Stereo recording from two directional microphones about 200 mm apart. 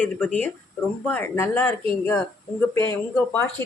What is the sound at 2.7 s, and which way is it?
Speech, 10° left (ahead or behind).